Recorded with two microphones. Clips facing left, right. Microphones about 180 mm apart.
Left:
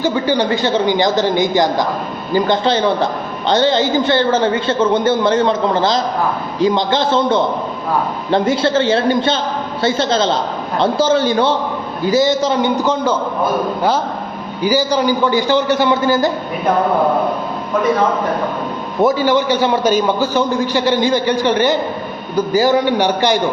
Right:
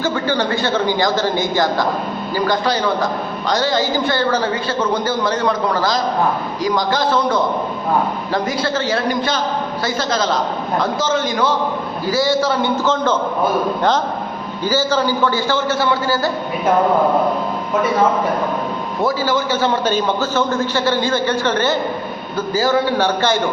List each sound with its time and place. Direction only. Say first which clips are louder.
0.0 s a man's voice: left 3 dB; 15° left (ahead or behind)
14.6 s a man's voice: left 3 dB; 15° left (ahead or behind)
19.0 s a man's voice: left 5 dB; 20° left (ahead or behind)